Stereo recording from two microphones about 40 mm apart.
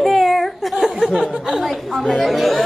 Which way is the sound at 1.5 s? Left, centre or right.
Centre.